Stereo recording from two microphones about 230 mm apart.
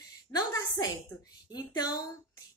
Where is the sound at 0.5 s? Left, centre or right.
Centre.